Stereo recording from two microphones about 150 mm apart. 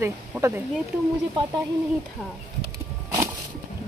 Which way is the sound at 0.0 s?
15° right (ahead or behind).